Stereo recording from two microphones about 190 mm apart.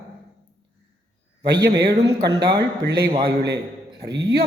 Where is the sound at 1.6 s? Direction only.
60° right (ahead or behind).